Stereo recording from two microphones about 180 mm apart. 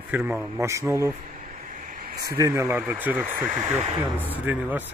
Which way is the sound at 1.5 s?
50° right (ahead or behind).